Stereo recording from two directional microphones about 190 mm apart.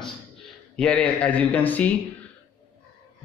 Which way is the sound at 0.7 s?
5° left (ahead or behind).